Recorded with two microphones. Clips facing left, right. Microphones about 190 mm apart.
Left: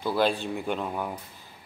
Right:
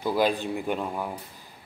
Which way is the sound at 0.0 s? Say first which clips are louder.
Right 1 dB; 15° right (ahead or behind).